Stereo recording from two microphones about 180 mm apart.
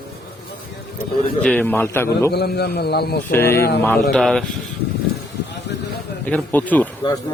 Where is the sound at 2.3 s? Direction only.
65° left (ahead or behind).